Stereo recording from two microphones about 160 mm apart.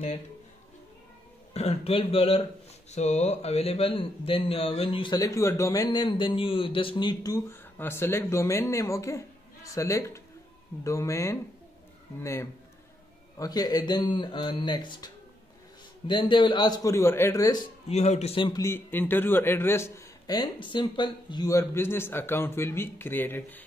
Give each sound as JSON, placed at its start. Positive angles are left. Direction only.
{"t": 1.5, "sound": "a man's voice", "side_deg": 40}
{"t": 16.1, "sound": "speech", "side_deg": 30}
{"t": 17.8, "sound": "a man's voice", "side_deg": 40}